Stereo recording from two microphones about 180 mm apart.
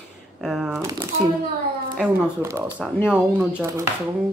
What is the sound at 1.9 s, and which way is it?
Speech, 5° right (ahead or behind).